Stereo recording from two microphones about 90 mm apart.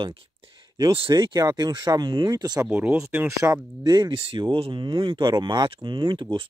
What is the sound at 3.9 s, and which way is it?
Speech, 60° right (ahead or behind).